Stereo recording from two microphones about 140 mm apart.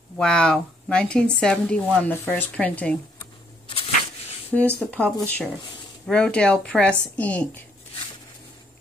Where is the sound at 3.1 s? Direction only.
40° left (ahead or behind).